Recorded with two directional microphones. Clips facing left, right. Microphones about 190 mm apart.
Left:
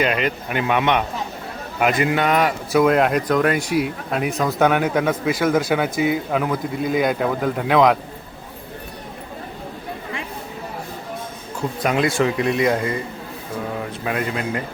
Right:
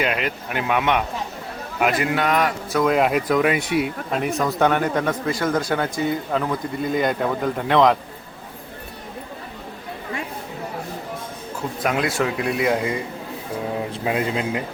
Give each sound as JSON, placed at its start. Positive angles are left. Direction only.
{"t": 0.0, "sound": "speech", "side_deg": -5}
{"t": 11.8, "sound": "speech", "side_deg": 0}
{"t": 13.7, "sound": "a man's voice", "side_deg": -20}